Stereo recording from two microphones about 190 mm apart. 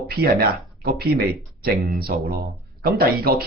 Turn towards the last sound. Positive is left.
turn(degrees=-50)  # may be behind; listen again after turning